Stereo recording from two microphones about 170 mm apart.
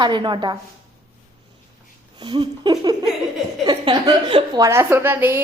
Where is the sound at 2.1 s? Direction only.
25° right (ahead or behind).